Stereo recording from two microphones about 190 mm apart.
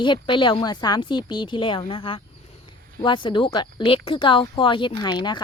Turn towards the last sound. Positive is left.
turn(degrees=25)  # may be behind; listen again after turning